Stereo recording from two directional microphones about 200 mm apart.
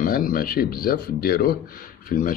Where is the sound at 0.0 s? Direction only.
45° left (ahead or behind).